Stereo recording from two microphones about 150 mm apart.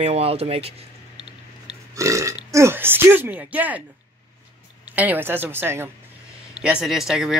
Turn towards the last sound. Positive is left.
turn(degrees=0)  # may be behind; listen again after turning